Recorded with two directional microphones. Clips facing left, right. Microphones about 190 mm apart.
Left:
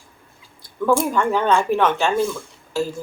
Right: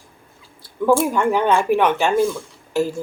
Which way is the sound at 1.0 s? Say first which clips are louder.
Right 2 dB; 10° right (ahead or behind).